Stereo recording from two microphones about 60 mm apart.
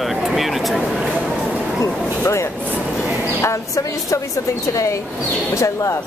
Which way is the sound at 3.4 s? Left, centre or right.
Left.